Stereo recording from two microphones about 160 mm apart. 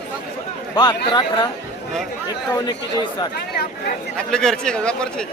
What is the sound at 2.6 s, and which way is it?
Speech, 25° left (ahead or behind).